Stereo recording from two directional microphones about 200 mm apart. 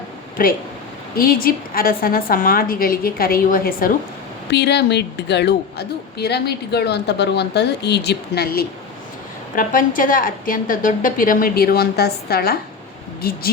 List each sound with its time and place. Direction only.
1.1 s a woman's voice: 45° left (ahead or behind)
4.5 s a woman's voice: 60° left (ahead or behind)